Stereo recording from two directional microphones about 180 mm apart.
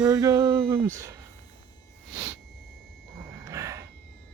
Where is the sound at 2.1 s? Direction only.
20° right (ahead or behind).